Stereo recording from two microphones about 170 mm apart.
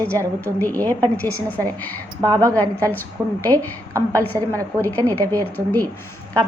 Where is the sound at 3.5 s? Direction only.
20° right (ahead or behind).